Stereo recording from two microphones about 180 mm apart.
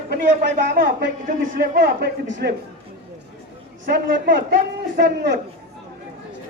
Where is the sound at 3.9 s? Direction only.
65° right (ahead or behind).